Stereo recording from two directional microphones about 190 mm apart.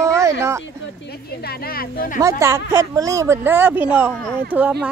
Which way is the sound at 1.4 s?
55° left (ahead or behind).